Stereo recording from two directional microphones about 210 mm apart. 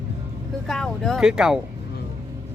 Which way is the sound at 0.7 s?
Centre (ahead or behind).